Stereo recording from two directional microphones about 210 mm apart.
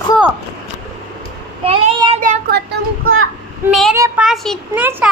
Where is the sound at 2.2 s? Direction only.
45° right (ahead or behind).